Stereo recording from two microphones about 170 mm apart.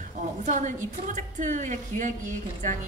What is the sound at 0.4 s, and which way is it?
A woman's voice, 45° right (ahead or behind).